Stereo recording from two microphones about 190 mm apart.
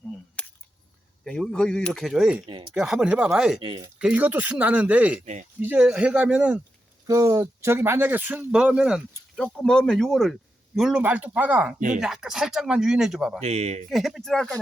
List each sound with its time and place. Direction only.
1.2 s speech: 5° left (ahead or behind)
2.5 s speech: 25° right (ahead or behind)
2.7 s speech: centre (ahead or behind)
3.6 s speech: 25° right (ahead or behind)
3.9 s speech: 5° right (ahead or behind)
5.2 s speech: 40° right (ahead or behind)
5.5 s speech: 5° right (ahead or behind)
7.1 s speech: 20° right (ahead or behind); by 13.4 s centre (ahead or behind)
13.4 s speech: 35° right (ahead or behind)
13.9 s speech: centre (ahead or behind)